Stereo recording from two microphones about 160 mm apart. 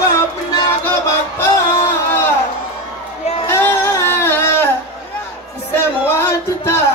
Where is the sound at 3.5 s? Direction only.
15° left (ahead or behind).